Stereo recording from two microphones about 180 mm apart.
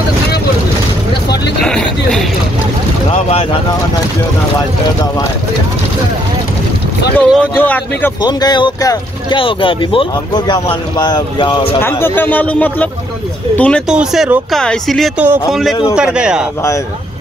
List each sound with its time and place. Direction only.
1.6 s a sound: 5° left (ahead or behind)
3.1 s vehicle: 35° left (ahead or behind)
7.2 s a man's voice: 10° left (ahead or behind)
8.2 s speech: 25° left (ahead or behind)
11.8 s a man's voice: 10° left (ahead or behind); by 16.4 s 5° right (ahead or behind)